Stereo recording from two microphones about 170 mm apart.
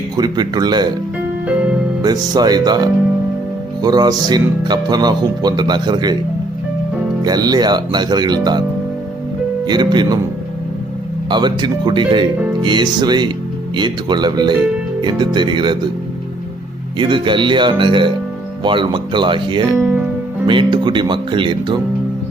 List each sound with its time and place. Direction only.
0.2 s speech: 25° right (ahead or behind)
2.0 s speech: 25° right (ahead or behind)
7.3 s speech: 25° right (ahead or behind)
9.6 s speech: 25° right (ahead or behind)
11.3 s speech: 25° right (ahead or behind)
17.0 s speech: 30° right (ahead or behind)
19.7 s speech: 10° right (ahead or behind)
20.5 s speech: 30° right (ahead or behind)